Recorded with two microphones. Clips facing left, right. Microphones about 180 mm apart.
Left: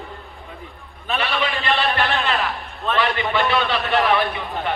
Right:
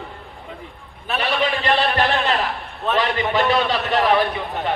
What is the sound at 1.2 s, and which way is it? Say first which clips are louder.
A man's voice: right 4 dB; 40° right (ahead or behind).